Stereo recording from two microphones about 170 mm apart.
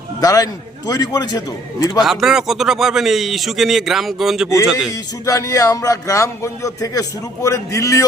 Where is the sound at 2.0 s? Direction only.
Centre (ahead or behind).